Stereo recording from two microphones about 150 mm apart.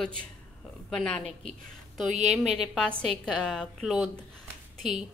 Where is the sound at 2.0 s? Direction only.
50° right (ahead or behind).